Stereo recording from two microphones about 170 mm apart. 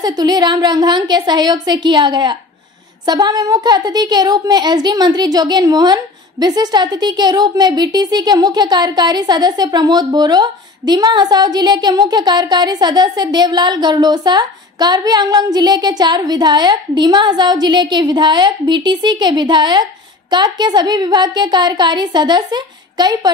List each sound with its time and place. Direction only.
0.0 s speech: 25° right (ahead or behind)